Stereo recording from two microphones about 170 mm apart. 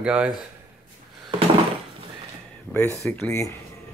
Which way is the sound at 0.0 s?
5° right (ahead or behind).